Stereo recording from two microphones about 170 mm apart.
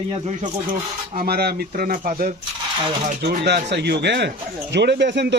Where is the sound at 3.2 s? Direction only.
75° right (ahead or behind).